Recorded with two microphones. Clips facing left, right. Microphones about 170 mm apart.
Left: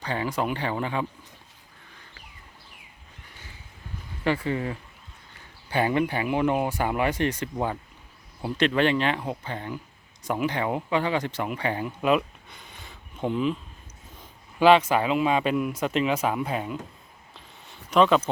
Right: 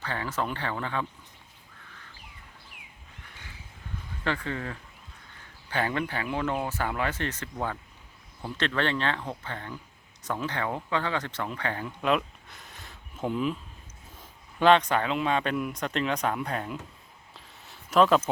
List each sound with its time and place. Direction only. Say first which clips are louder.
0.0 s speech: left 4 dB; 15° left (ahead or behind)
4.2 s a man's voice: left 6 dB; 10° left (ahead or behind)
17.3 s a sound: left 2 dB; centre (ahead or behind)